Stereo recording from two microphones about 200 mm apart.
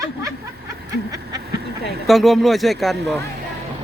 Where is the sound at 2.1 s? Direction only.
Centre (ahead or behind).